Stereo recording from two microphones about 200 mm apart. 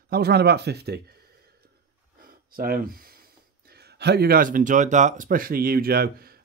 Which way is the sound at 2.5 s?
50° right (ahead or behind).